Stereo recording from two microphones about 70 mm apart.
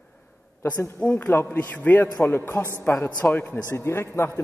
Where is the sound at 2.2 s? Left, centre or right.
Left.